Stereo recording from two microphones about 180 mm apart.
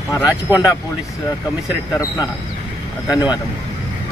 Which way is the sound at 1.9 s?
20° left (ahead or behind).